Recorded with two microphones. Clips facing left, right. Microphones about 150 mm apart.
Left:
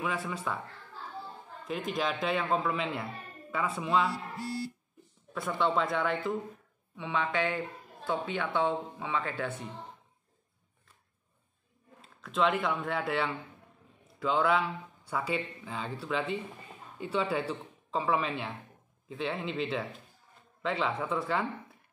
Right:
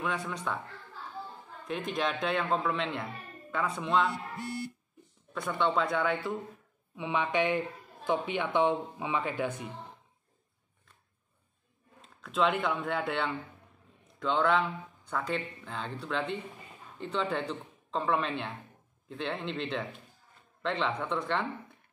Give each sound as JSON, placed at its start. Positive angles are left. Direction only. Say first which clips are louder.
{"t": 0.0, "sound": "speech", "louder": "even", "side_deg": 5}
{"t": 1.7, "sound": "speech", "louder": "even", "side_deg": 0}
{"t": 5.3, "sound": "speech", "louder": "even", "side_deg": 0}
{"t": 7.0, "sound": "speech", "louder": "right 2 dB", "side_deg": -15}
{"t": 12.0, "sound": "speech", "louder": "even", "side_deg": 0}